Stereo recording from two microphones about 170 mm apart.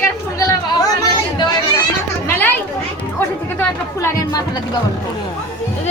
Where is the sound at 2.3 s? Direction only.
10° left (ahead or behind).